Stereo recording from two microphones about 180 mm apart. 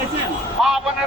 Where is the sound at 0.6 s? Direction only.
Centre (ahead or behind).